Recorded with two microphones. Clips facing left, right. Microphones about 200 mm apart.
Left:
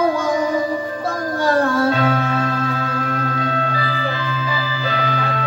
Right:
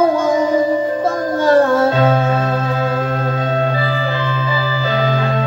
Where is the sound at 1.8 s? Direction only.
25° right (ahead or behind).